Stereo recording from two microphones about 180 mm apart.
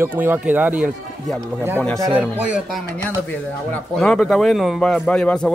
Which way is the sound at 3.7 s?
5° left (ahead or behind).